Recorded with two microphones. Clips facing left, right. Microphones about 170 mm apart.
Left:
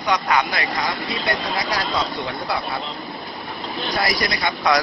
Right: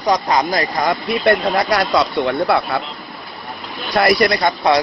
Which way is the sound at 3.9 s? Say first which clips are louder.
Right 10 dB; 60° right (ahead or behind).